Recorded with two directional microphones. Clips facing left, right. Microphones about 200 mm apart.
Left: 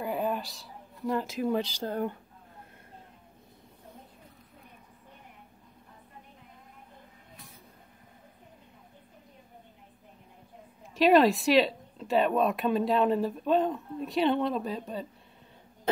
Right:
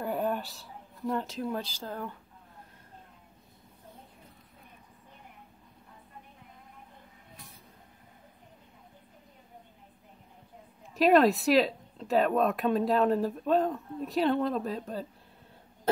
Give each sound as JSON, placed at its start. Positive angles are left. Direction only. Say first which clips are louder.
{"t": 0.0, "sound": "a sound", "louder": "even", "side_deg": 0}
{"t": 1.0, "sound": "speech", "louder": "left 2 dB", "side_deg": 5}
{"t": 1.5, "sound": "speech", "louder": "left 6 dB", "side_deg": 75}
{"t": 11.0, "sound": "speech", "louder": "left 1 dB", "side_deg": 0}